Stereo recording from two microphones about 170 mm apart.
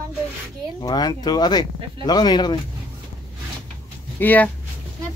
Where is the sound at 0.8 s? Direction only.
20° left (ahead or behind).